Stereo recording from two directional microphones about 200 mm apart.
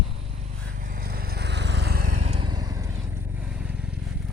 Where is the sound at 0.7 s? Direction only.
45° right (ahead or behind).